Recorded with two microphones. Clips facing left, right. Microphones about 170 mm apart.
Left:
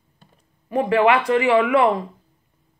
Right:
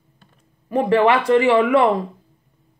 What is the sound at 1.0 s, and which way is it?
Speech, 35° right (ahead or behind).